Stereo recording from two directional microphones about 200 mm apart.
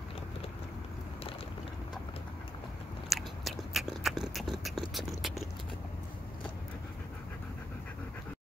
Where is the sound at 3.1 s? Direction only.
Centre (ahead or behind).